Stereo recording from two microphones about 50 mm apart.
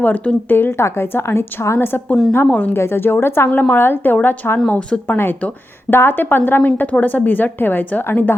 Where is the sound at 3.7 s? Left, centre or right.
Left.